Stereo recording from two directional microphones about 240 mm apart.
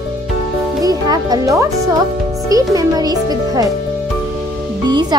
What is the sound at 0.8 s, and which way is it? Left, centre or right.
A child's voice, centre.